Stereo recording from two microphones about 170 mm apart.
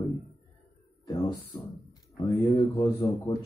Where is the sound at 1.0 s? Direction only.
20° left (ahead or behind).